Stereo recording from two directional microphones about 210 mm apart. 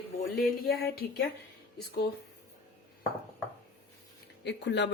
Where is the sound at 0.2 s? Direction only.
45° left (ahead or behind).